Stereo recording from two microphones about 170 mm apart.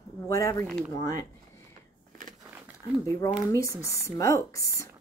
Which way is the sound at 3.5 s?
15° left (ahead or behind).